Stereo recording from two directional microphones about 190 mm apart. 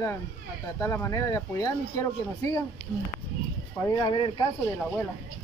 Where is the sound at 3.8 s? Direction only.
25° left (ahead or behind).